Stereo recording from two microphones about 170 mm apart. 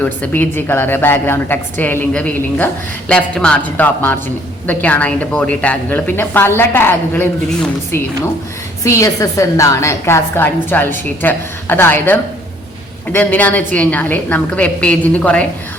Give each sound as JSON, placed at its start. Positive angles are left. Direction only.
{"t": 0.0, "sound": "a woman's voice", "side_deg": 10}
{"t": 8.8, "sound": "a woman's voice", "side_deg": 20}